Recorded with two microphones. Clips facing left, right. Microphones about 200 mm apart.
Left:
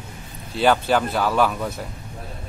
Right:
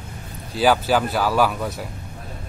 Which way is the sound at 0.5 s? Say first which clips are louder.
Even; 5° right (ahead or behind).